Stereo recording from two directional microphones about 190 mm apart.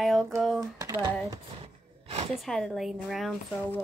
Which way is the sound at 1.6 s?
30° right (ahead or behind).